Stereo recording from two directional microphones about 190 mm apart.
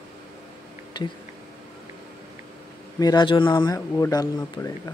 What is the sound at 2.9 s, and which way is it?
Speech, 20° left (ahead or behind).